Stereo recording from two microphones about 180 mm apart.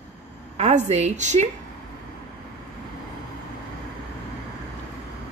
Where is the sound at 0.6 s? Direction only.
40° right (ahead or behind).